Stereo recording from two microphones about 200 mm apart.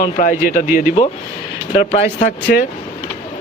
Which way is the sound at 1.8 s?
30° left (ahead or behind).